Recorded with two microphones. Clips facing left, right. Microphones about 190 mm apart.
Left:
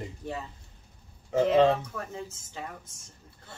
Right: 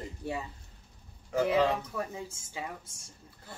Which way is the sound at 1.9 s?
10° right (ahead or behind).